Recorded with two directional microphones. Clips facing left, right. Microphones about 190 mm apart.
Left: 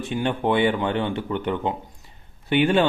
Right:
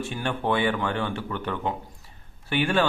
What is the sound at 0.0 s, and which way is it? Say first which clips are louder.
Speech: left 4 dB; 20° left (ahead or behind).